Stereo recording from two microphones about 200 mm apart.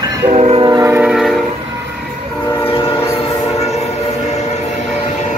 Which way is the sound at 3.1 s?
30° left (ahead or behind).